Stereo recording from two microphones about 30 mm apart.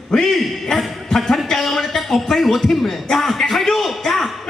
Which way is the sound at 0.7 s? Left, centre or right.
Left.